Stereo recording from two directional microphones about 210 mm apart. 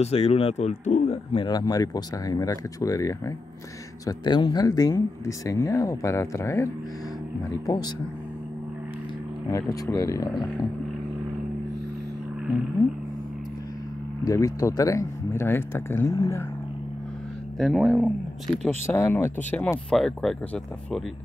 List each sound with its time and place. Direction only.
0.0 s speech: 30° left (ahead or behind)
9.5 s speech: 15° left (ahead or behind)
14.2 s speech: 15° left (ahead or behind)
17.6 s speech: centre (ahead or behind)
18.9 s speech: 10° left (ahead or behind)